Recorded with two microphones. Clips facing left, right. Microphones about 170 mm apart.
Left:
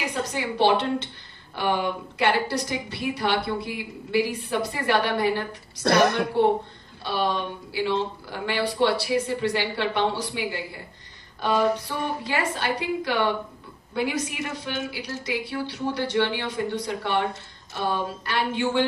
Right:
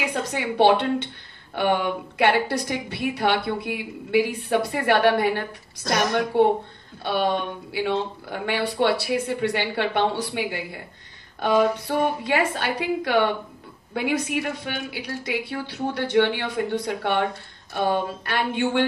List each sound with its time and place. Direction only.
0.3 s a woman's voice: 55° right (ahead or behind)
5.9 s a woman's voice: 60° left (ahead or behind)
7.0 s a woman's voice: 55° right (ahead or behind)